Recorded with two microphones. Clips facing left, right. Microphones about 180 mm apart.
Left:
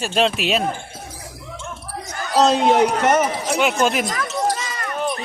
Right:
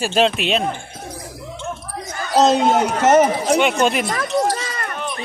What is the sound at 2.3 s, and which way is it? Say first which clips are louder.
Speech: right 2 dB; 40° right (ahead or behind).